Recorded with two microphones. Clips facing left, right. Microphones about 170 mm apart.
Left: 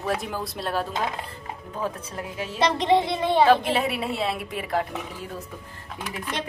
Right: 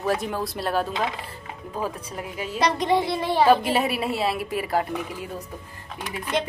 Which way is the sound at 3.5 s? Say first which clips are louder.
Right 1 dB; 5° right (ahead or behind).